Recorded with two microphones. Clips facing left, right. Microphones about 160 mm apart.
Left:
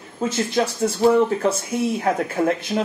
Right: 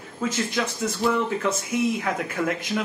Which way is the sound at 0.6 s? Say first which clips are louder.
Left 9 dB; 40° left (ahead or behind).